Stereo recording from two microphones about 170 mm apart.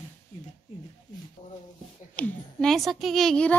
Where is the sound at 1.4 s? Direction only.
25° left (ahead or behind).